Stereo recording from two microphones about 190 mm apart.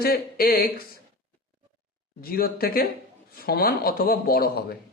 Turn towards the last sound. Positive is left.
turn(degrees=50)  # may be behind; listen again after turning